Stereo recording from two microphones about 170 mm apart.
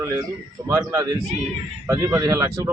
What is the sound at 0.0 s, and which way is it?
Speech, 20° right (ahead or behind).